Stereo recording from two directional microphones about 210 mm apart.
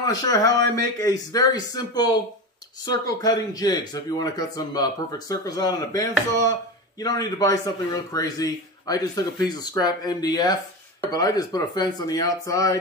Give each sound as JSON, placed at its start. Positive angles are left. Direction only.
{"t": 0.0, "sound": "a man's voice", "side_deg": 15}